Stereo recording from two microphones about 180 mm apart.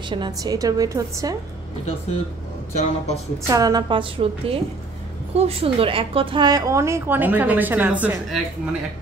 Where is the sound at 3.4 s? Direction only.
20° right (ahead or behind).